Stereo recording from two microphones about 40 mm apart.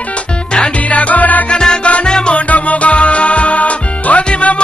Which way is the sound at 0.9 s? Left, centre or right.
Left.